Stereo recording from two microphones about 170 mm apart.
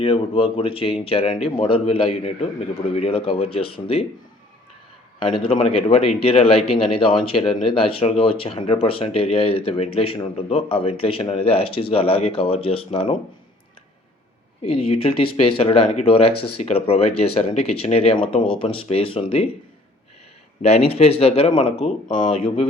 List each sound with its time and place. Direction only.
0.0 s speech: 30° left (ahead or behind)
5.5 s speech: 35° left (ahead or behind)
14.6 s speech: 35° left (ahead or behind)
20.6 s speech: 40° left (ahead or behind)